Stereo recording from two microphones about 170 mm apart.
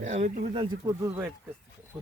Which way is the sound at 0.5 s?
30° right (ahead or behind).